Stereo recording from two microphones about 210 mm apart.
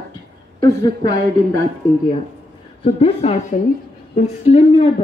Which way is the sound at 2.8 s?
30° left (ahead or behind).